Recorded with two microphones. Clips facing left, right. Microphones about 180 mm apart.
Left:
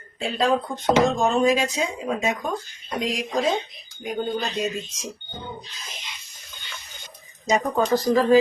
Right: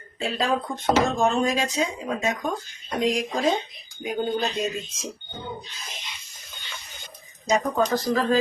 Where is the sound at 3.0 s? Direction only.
Centre (ahead or behind).